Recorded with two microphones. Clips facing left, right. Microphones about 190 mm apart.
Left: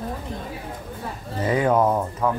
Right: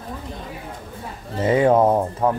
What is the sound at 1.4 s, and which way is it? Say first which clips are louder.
Speech: right 4 dB; 25° right (ahead or behind).